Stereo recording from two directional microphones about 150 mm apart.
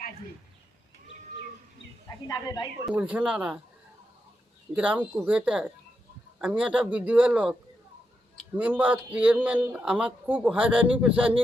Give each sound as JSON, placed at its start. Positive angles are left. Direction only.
{"t": 2.2, "sound": "speech", "side_deg": 25}
{"t": 2.9, "sound": "speech", "side_deg": -10}
{"t": 4.7, "sound": "speech", "side_deg": -10}
{"t": 8.5, "sound": "speech", "side_deg": -10}